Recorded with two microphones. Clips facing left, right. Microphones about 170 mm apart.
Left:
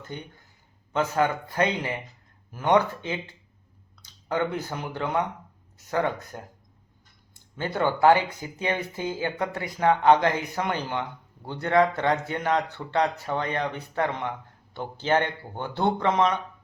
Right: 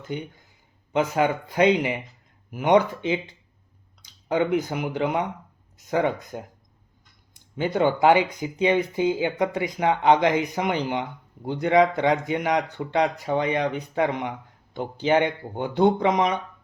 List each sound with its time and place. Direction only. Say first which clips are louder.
0.0 s speech: right 6 dB; 10° right (ahead or behind)